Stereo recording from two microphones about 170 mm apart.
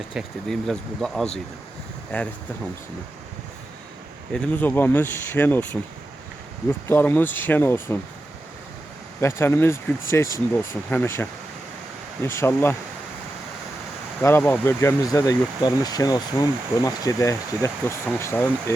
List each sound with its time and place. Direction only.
0.1 s speech: centre (ahead or behind)
4.3 s speech: 10° left (ahead or behind)
9.2 s speech: 15° left (ahead or behind)
14.2 s speech: 15° left (ahead or behind)